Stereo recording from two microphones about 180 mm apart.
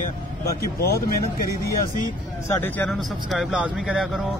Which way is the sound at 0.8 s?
60° left (ahead or behind).